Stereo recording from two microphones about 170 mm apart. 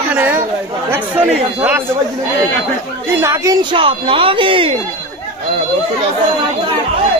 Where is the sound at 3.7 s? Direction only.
30° right (ahead or behind).